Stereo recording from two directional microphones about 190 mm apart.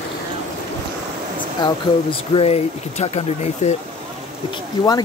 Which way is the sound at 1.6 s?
25° left (ahead or behind).